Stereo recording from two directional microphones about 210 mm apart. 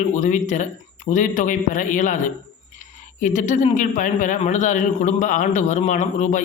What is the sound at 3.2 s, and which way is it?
A man's voice, 35° left (ahead or behind).